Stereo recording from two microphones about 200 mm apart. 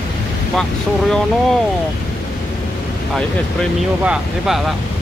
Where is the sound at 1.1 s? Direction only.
5° left (ahead or behind).